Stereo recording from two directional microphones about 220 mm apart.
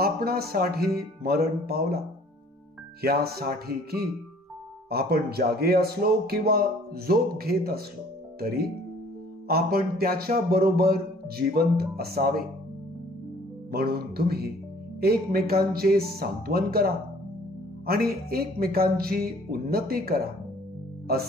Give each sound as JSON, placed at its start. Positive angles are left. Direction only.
{"t": 0.0, "sound": "speech", "side_deg": -45}
{"t": 13.7, "sound": "speech", "side_deg": -45}